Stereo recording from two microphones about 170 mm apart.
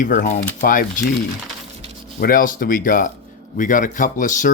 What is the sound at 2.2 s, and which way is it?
Speech, 55° left (ahead or behind).